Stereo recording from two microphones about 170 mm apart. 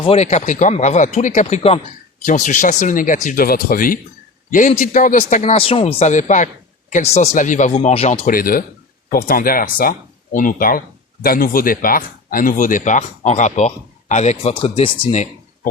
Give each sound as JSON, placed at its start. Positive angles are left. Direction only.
{"t": 0.0, "sound": "speech", "side_deg": 35}
{"t": 4.5, "sound": "speech", "side_deg": 45}
{"t": 8.3, "sound": "speech", "side_deg": 55}